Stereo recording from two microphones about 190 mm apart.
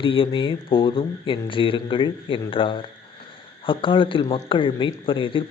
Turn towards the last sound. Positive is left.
turn(degrees=25)  # may be behind; listen again after turning